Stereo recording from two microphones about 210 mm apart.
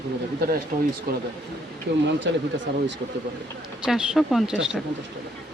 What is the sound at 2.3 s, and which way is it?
Speech, 55° right (ahead or behind).